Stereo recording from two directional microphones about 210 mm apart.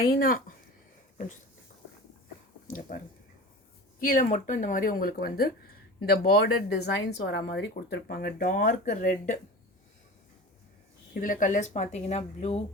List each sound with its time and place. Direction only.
0.0 s speech: 45° left (ahead or behind)
2.6 s speech: 40° left (ahead or behind)
4.0 s speech: 40° left (ahead or behind)
11.1 s speech: 40° left (ahead or behind)